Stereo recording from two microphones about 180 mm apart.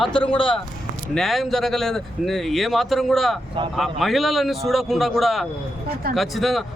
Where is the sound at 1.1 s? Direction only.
Centre (ahead or behind).